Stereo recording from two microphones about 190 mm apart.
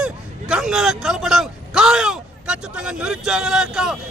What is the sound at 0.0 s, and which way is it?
Speech, 5° right (ahead or behind).